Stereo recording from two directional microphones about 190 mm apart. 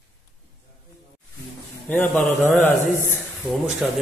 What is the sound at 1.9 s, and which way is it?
A man's voice, centre (ahead or behind).